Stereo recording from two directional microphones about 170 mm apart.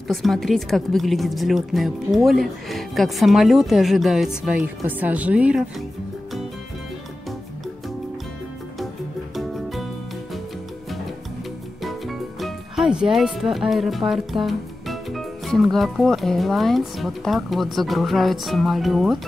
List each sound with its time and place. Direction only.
0.1 s a woman's voice: centre (ahead or behind)
9.3 s music: centre (ahead or behind)
11.8 s speech: centre (ahead or behind)